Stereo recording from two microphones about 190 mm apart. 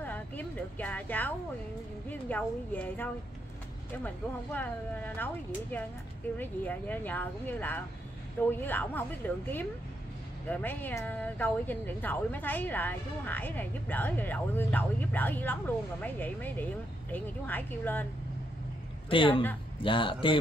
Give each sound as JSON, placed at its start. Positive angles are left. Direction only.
{"t": 0.0, "sound": "a sound", "side_deg": 10}
{"t": 2.0, "sound": "a woman's voice", "side_deg": 10}
{"t": 10.5, "sound": "speech", "side_deg": 10}
{"t": 19.0, "sound": "speech", "side_deg": 25}